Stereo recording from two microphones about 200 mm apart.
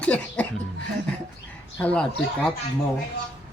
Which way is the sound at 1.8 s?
5° left (ahead or behind).